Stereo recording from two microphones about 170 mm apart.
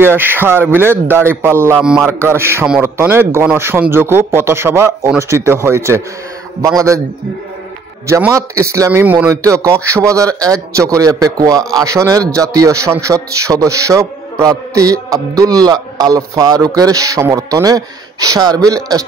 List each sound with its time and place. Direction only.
0.0 s a man's voice: 10° right (ahead or behind)
8.1 s a man's voice: 15° right (ahead or behind)